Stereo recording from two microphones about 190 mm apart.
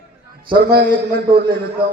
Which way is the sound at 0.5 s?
50° right (ahead or behind).